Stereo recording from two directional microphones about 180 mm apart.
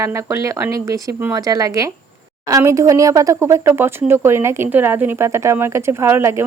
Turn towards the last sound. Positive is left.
turn(degrees=-15)  # may be behind; listen again after turning